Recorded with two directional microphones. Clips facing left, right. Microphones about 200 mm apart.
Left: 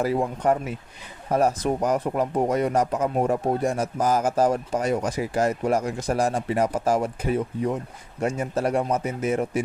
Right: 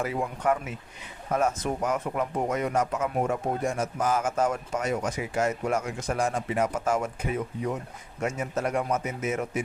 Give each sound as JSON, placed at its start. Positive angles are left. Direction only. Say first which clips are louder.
{"t": 0.0, "sound": "speech", "louder": "left 5 dB", "side_deg": 35}